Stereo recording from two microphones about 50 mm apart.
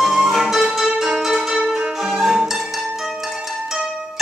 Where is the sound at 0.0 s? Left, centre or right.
Centre.